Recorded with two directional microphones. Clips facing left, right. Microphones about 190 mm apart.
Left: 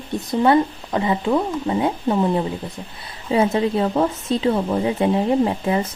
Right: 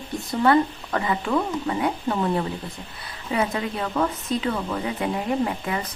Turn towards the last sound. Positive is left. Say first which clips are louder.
# left 6 dB
turn(degrees=25)  # may be behind; listen again after turning